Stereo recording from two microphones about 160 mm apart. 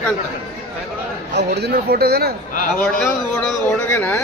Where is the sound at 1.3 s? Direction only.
90° right.